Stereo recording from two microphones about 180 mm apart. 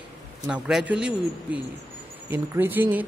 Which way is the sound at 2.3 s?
10° right (ahead or behind).